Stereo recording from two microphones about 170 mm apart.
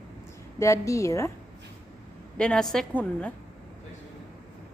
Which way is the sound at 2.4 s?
5° left (ahead or behind).